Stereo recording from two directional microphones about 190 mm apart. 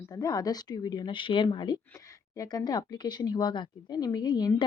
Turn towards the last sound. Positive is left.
turn(degrees=20)  # may be behind; listen again after turning